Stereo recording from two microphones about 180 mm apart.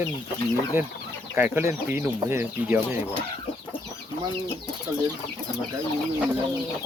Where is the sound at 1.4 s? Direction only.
10° right (ahead or behind).